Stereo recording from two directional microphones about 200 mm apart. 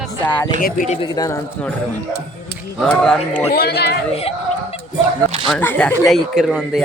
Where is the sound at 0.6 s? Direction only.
40° left (ahead or behind).